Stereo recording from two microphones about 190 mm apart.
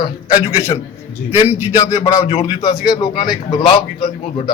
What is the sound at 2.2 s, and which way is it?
Speech, 30° left (ahead or behind).